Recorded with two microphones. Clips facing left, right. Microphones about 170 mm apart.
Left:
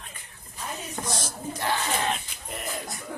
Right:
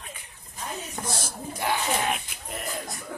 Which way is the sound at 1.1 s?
10° right (ahead or behind).